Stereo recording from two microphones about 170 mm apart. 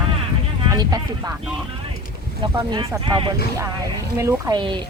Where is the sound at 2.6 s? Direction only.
25° right (ahead or behind).